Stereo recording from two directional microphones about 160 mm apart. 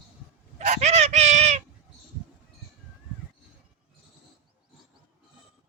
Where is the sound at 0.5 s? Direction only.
45° right (ahead or behind).